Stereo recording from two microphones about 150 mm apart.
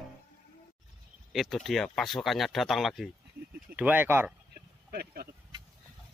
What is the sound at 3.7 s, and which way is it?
Speech, 10° right (ahead or behind).